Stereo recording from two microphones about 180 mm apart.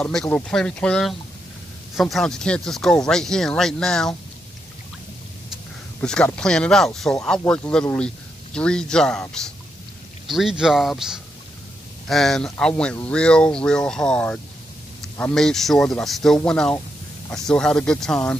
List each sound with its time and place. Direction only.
0.0 s speech: 5° left (ahead or behind)
5.9 s speech: 10° left (ahead or behind)
10.2 s speech: centre (ahead or behind)